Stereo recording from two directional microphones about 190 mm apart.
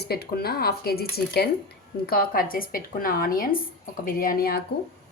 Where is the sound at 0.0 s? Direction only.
55° left (ahead or behind).